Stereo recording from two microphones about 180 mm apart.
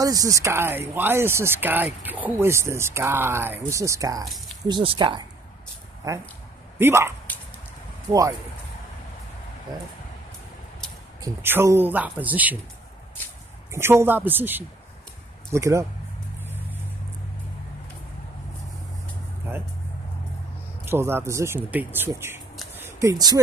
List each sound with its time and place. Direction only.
0.0 s speech: 20° right (ahead or behind)
6.8 s speech: 15° right (ahead or behind)
11.1 s speech: 15° right (ahead or behind)
13.7 s speech: 15° right (ahead or behind)
20.8 s speech: 15° right (ahead or behind)